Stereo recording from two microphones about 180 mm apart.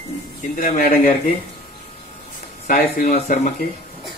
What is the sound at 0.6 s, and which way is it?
Speech, 50° left (ahead or behind).